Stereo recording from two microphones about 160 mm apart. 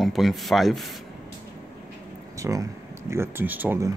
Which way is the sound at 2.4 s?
20° right (ahead or behind).